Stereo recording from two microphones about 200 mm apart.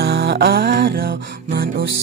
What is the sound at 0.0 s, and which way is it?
Music, 55° right (ahead or behind).